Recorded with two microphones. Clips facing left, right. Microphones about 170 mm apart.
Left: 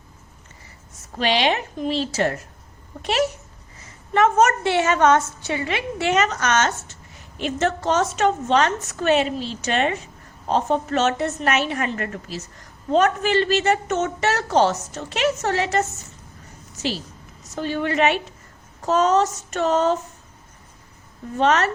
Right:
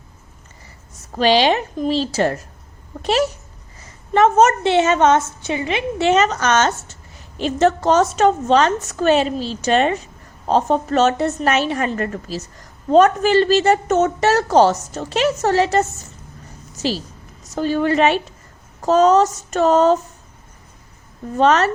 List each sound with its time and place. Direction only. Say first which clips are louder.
1.1 s a woman's voice: right 6 dB; 35° right (ahead or behind)
21.3 s a woman's voice: right 4 dB; 35° right (ahead or behind)